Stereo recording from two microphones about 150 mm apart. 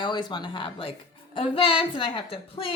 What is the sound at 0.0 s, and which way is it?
A woman's voice, 30° left (ahead or behind).